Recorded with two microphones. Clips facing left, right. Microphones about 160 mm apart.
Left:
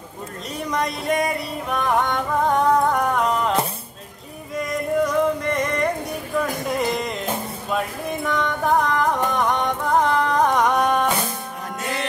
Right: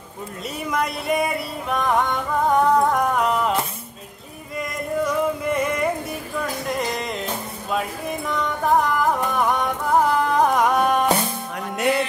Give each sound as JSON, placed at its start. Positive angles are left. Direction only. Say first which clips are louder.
{"t": 0.7, "sound": "music", "louder": "even", "side_deg": -5}
{"t": 4.6, "sound": "a sound", "louder": "left 3 dB", "side_deg": 0}
{"t": 6.7, "sound": "music", "louder": "left 1 dB", "side_deg": 0}
{"t": 8.3, "sound": "music", "louder": "even", "side_deg": 0}